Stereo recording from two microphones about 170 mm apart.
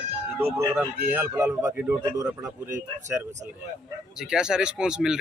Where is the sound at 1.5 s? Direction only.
5° right (ahead or behind).